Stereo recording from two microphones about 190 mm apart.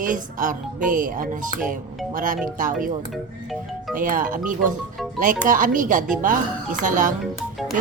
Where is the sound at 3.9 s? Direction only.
45° right (ahead or behind).